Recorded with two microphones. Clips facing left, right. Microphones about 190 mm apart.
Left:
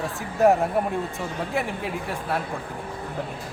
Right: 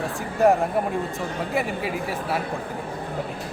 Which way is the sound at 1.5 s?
Centre (ahead or behind).